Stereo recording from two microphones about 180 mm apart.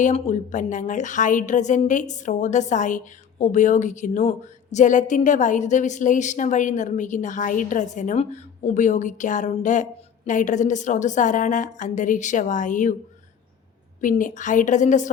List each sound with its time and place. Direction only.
0.0 s a woman's voice: 45° left (ahead or behind)
14.0 s a woman's voice: 45° left (ahead or behind)